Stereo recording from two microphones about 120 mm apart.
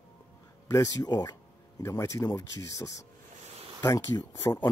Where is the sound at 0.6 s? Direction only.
30° left (ahead or behind).